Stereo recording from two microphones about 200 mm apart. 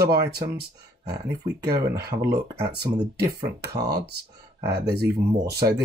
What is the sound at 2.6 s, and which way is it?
Speech, 55° right (ahead or behind).